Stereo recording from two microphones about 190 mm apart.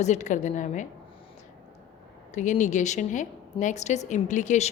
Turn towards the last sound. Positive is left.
turn(degrees=40)  # may be behind; listen again after turning